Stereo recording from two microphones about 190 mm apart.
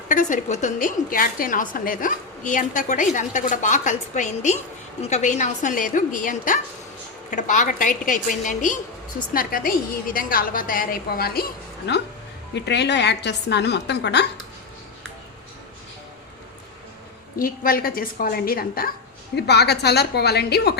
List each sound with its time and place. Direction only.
0.1 s a woman's voice: 45° left (ahead or behind); by 14.3 s 60° left (ahead or behind)
17.3 s a woman's voice: 50° left (ahead or behind)